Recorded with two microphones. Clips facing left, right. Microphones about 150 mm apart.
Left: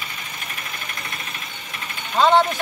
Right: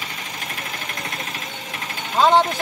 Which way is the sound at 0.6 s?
90° right.